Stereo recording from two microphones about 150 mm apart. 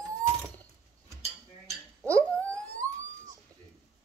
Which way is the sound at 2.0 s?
10° left (ahead or behind).